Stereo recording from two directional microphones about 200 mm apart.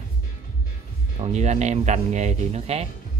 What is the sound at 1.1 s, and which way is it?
A man's voice, 35° right (ahead or behind).